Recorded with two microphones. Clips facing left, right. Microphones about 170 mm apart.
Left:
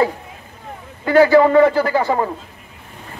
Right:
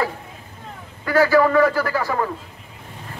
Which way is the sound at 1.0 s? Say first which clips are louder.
Left 5 dB; 25° left (ahead or behind).